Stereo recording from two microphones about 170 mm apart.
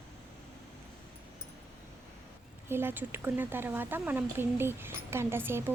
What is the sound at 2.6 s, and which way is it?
Speech, 15° right (ahead or behind).